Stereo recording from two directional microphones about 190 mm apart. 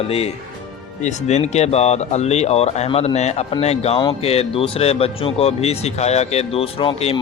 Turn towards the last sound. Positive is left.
turn(degrees=30)  # may be behind; listen again after turning